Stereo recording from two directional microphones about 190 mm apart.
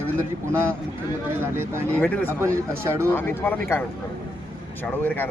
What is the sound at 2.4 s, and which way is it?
Speech, 15° right (ahead or behind).